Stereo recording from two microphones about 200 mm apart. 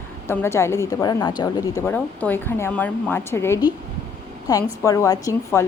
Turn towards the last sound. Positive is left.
turn(degrees=15)  # may be behind; listen again after turning